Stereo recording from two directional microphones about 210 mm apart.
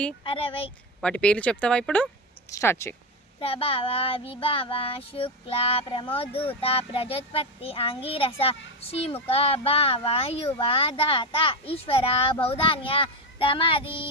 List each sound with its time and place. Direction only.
0.3 s a child's voice: 25° left (ahead or behind)
1.0 s speech: 5° left (ahead or behind)
3.4 s a child's voice: 25° left (ahead or behind)